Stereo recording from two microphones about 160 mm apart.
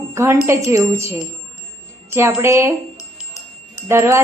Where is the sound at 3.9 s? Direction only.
15° right (ahead or behind).